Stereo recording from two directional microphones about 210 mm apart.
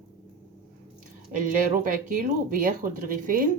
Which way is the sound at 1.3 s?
40° right (ahead or behind).